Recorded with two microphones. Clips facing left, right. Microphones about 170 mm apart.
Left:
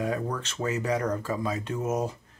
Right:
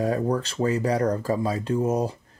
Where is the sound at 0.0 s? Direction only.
35° right (ahead or behind).